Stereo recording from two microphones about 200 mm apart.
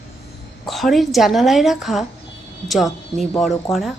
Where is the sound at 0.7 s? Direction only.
Centre (ahead or behind).